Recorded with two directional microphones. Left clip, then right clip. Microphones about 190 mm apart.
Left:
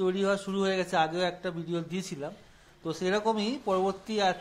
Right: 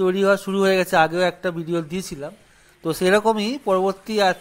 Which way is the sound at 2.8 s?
30° right (ahead or behind).